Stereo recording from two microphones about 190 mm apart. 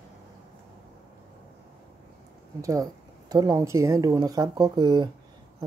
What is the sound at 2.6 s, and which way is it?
Speech, 20° right (ahead or behind).